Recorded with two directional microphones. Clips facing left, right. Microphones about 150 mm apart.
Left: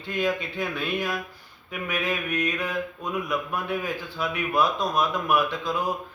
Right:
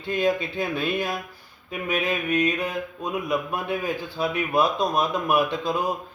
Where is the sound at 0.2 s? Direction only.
25° right (ahead or behind).